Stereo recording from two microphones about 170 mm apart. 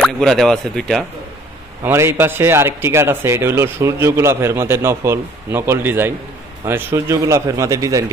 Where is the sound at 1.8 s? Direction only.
15° right (ahead or behind).